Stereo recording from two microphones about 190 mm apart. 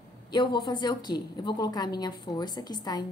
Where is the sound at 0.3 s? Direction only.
25° left (ahead or behind).